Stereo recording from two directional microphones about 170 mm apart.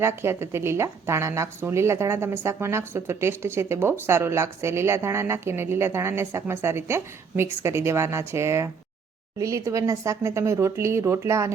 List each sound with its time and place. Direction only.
0.0 s a woman's voice: 15° right (ahead or behind)